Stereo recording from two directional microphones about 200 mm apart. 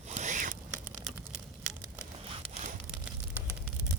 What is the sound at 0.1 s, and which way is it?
Zipper, 35° right (ahead or behind).